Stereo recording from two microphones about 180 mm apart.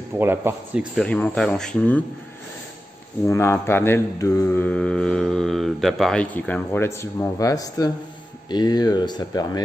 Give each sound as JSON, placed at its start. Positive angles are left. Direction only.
{"t": 0.2, "sound": "a man's voice", "side_deg": -10}
{"t": 0.9, "sound": "a man's voice", "side_deg": 5}
{"t": 3.3, "sound": "mantra", "side_deg": 15}
{"t": 8.5, "sound": "speech", "side_deg": 25}